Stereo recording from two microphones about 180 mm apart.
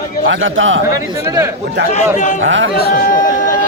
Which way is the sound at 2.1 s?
45° left (ahead or behind).